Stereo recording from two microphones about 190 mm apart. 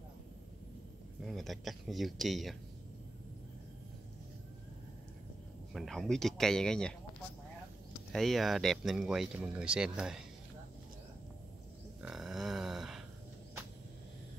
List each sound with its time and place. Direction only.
1.2 s speech: centre (ahead or behind)
5.7 s speech: centre (ahead or behind)
8.1 s speech: centre (ahead or behind)
12.0 s a sound: centre (ahead or behind)